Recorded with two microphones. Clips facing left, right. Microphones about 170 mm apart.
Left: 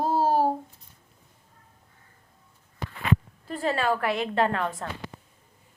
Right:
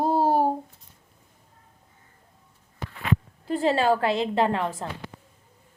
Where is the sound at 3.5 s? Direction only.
25° right (ahead or behind).